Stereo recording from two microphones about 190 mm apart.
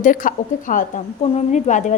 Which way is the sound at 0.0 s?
45° left (ahead or behind).